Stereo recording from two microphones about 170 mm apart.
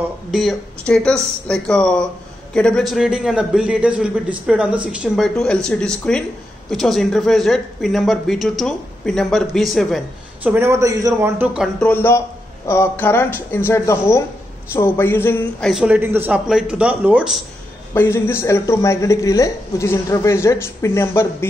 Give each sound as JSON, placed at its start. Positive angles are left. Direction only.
{"t": 0.3, "sound": "a man's voice", "side_deg": 0}
{"t": 10.4, "sound": "speech", "side_deg": -15}
{"t": 11.8, "sound": "speech", "side_deg": 10}
{"t": 15.7, "sound": "speech", "side_deg": -5}
{"t": 17.9, "sound": "speech", "side_deg": 15}